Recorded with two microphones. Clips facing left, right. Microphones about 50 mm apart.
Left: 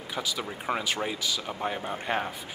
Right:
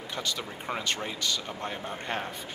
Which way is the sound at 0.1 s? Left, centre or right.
Centre.